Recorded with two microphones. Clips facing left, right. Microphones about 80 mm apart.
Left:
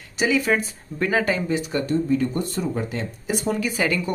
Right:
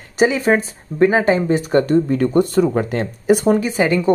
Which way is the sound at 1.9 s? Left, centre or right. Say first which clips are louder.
Right 6 dB; right.